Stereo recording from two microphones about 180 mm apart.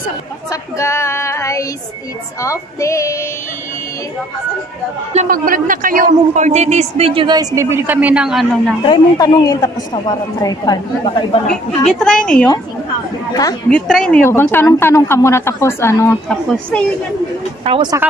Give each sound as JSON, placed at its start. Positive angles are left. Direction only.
{"t": 0.5, "sound": "female singing", "side_deg": 15}
{"t": 2.4, "sound": "speech", "side_deg": 15}
{"t": 5.1, "sound": "a man's voice", "side_deg": -45}
{"t": 8.8, "sound": "speech", "side_deg": 25}
{"t": 11.4, "sound": "a woman's voice", "side_deg": 5}
{"t": 13.3, "sound": "speech", "side_deg": 20}
{"t": 13.7, "sound": "speech", "side_deg": 5}
{"t": 16.3, "sound": "a woman's voice", "side_deg": 5}